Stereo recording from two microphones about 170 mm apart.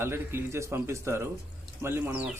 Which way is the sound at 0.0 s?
15° right (ahead or behind).